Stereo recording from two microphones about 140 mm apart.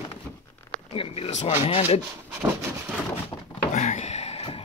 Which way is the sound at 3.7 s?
55° left (ahead or behind).